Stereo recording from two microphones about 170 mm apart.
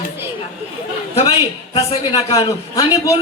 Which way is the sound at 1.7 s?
25° left (ahead or behind).